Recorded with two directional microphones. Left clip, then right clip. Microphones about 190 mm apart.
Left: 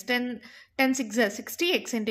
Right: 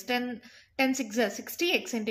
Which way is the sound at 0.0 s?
30° left (ahead or behind).